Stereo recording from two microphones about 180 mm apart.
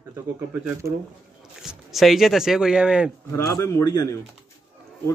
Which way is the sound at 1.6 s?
Centre (ahead or behind).